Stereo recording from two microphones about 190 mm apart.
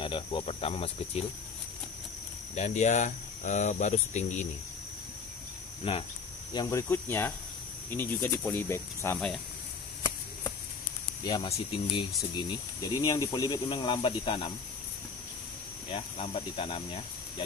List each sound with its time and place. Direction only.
0.0 s snake: 25° left (ahead or behind)
2.5 s speech: 40° left (ahead or behind)
5.9 s snake: 30° left (ahead or behind)
6.5 s speech: 20° left (ahead or behind)
11.2 s snake: 25° left (ahead or behind)
13.0 s snake: 20° left (ahead or behind)
15.9 s snake: 30° left (ahead or behind)